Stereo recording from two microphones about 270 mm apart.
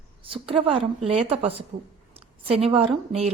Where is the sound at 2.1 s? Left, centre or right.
Right.